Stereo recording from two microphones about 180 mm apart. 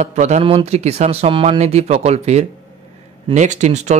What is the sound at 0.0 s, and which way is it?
Speech, 40° right (ahead or behind).